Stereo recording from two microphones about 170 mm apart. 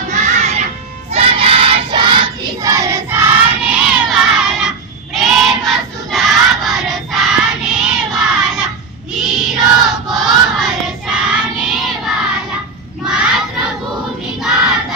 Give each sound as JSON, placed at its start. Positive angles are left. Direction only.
{"t": 0.1, "sound": "music", "side_deg": -45}
{"t": 1.1, "sound": "choir", "side_deg": -35}
{"t": 5.1, "sound": "crowd", "side_deg": 0}
{"t": 9.1, "sound": "choir", "side_deg": -5}
{"t": 13.1, "sound": "crowd", "side_deg": -5}